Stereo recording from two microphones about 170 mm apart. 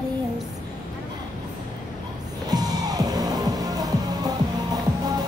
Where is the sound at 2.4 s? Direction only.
20° right (ahead or behind).